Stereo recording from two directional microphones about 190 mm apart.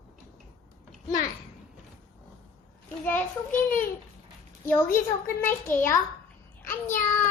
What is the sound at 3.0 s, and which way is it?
Speech, 10° left (ahead or behind).